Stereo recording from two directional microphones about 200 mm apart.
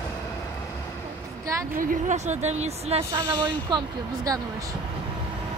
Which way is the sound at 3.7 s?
20° right (ahead or behind).